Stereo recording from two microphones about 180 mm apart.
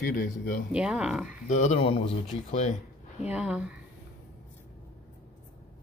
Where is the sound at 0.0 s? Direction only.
55° left (ahead or behind).